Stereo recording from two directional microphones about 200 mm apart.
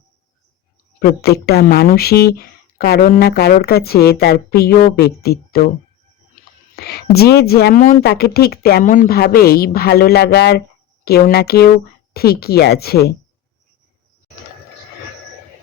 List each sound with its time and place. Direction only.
0.9 s speech: 50° left (ahead or behind)
6.7 s speech: 50° left (ahead or behind)